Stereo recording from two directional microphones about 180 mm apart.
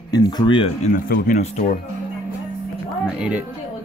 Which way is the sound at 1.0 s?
55° left (ahead or behind).